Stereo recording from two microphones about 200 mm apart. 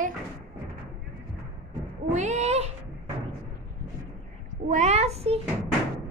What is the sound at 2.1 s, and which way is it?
Cat, 35° right (ahead or behind).